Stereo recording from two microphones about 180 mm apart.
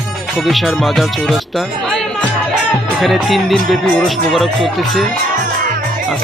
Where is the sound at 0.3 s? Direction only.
Centre (ahead or behind).